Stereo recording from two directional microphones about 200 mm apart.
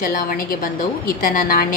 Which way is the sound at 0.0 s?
45° left (ahead or behind).